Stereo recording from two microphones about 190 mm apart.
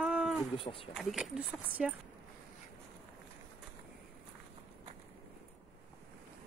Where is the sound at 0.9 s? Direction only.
5° right (ahead or behind).